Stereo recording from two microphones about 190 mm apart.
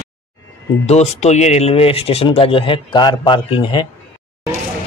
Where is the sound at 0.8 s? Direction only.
35° left (ahead or behind).